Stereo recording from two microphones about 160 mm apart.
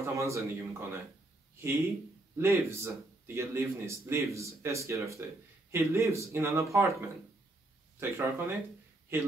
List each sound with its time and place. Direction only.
0.0 s speech: 20° right (ahead or behind)
2.3 s speech: 15° right (ahead or behind)